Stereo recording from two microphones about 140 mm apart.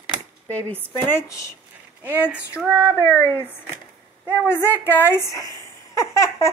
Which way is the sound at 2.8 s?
15° left (ahead or behind).